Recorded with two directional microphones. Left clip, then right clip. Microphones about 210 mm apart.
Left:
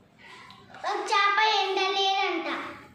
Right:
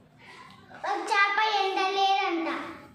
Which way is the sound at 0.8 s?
10° right (ahead or behind).